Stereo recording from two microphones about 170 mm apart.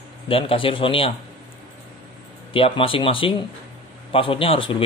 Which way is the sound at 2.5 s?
35° left (ahead or behind).